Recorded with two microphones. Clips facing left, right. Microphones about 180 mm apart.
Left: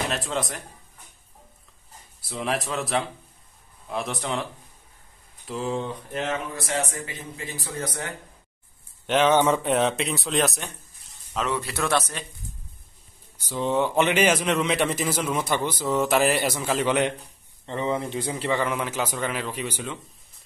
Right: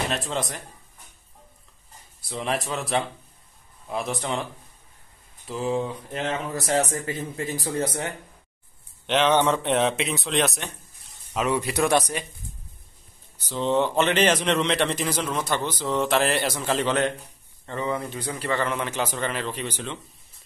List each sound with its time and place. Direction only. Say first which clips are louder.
0.1 s a man's voice: even; centre (ahead or behind)
2.2 s a man's voice: even; centre (ahead or behind)
5.5 s a man's voice: right 2 dB; centre (ahead or behind)
6.5 s a man's voice: right 4 dB; 40° right (ahead or behind)
9.0 s a man's voice: left 1 dB; 5° left (ahead or behind)
11.3 s a man's voice: right 4 dB; 15° right (ahead or behind)
13.4 s a man's voice: right 1 dB; 10° left (ahead or behind)
18.6 s a man's voice: even; 10° left (ahead or behind)